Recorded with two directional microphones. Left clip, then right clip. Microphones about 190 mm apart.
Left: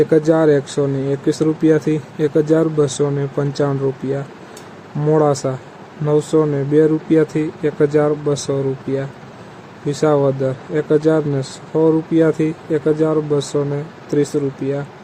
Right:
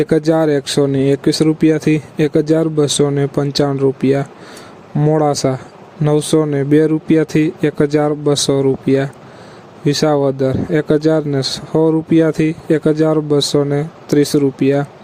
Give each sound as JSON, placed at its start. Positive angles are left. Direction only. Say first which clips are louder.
{"t": 0.0, "sound": "speech", "louder": "even", "side_deg": -50}